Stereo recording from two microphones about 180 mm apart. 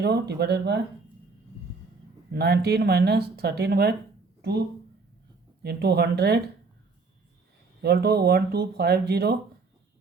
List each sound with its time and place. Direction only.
0.0 s speech: 65° right (ahead or behind)
2.3 s speech: 65° right (ahead or behind)
5.6 s speech: 65° right (ahead or behind)
7.8 s speech: 65° right (ahead or behind)